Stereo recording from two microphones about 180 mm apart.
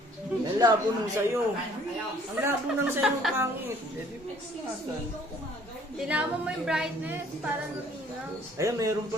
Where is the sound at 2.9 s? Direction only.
10° right (ahead or behind).